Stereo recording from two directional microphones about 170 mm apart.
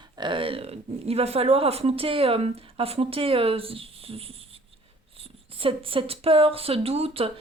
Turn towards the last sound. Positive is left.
turn(degrees=-35)  # may be behind; listen again after turning